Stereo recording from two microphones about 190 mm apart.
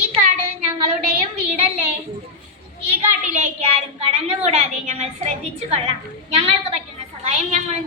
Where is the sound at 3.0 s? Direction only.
35° right (ahead or behind).